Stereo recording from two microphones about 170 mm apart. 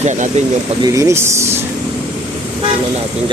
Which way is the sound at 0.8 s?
20° right (ahead or behind).